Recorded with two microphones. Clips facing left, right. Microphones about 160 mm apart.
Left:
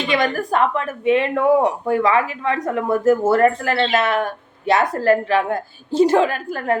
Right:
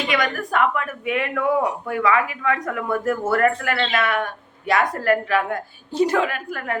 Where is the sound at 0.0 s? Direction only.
30° left (ahead or behind).